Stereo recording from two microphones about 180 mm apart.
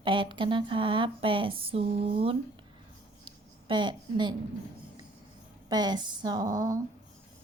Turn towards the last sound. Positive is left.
turn(degrees=-20)  # may be behind; listen again after turning